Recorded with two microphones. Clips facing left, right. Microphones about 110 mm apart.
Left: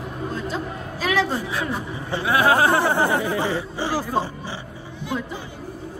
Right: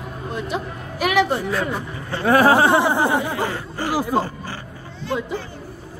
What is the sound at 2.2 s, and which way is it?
Speech, 40° right (ahead or behind).